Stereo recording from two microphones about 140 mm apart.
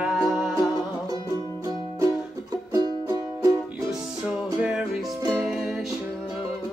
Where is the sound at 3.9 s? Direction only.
5° right (ahead or behind).